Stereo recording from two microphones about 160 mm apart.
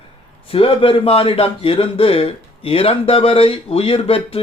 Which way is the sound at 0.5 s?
35° left (ahead or behind).